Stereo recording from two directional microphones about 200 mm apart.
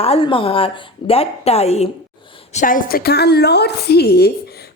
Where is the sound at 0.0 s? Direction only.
30° left (ahead or behind).